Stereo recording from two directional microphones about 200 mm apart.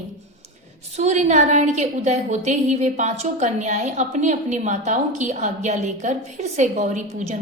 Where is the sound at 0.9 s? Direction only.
35° right (ahead or behind).